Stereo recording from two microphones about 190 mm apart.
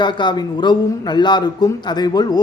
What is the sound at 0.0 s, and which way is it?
Speech, 25° left (ahead or behind).